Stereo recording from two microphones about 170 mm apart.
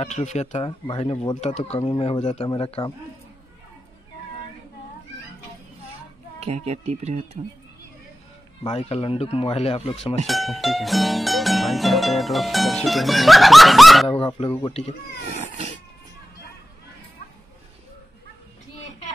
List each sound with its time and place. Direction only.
0.0 s speech: 40° left (ahead or behind)
1.4 s speech: 40° left (ahead or behind)
6.4 s speech: 40° right (ahead or behind)
8.6 s speech: 35° left (ahead or behind)
10.2 s music: centre (ahead or behind)
14.2 s speech: 30° left (ahead or behind)